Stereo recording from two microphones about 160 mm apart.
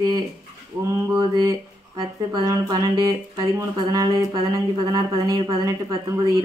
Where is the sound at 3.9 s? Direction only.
25° right (ahead or behind).